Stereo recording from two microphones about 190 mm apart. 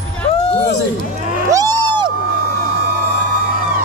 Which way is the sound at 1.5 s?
20° right (ahead or behind).